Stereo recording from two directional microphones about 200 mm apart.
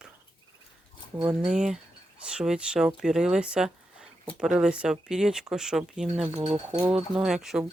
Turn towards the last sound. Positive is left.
turn(degrees=-5)  # may be behind; listen again after turning